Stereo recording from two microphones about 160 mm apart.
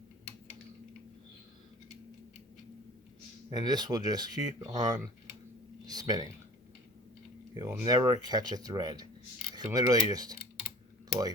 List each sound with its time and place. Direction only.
3.5 s speech: 25° right (ahead or behind)
5.8 s a sound: 25° right (ahead or behind)
7.5 s speech: 20° right (ahead or behind)